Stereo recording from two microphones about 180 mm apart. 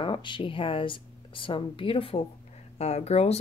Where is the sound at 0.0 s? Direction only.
30° left (ahead or behind).